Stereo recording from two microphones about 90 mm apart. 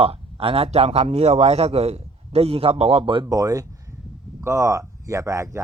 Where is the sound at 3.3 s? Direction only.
40° right (ahead or behind).